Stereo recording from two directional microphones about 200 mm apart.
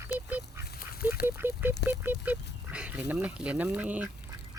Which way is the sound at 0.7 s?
50° left (ahead or behind).